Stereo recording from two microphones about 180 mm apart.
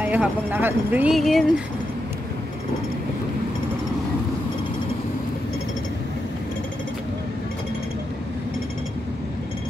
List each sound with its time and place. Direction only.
0.0 s speech: 10° right (ahead or behind)